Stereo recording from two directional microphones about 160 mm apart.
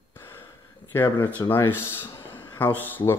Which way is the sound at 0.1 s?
15° left (ahead or behind).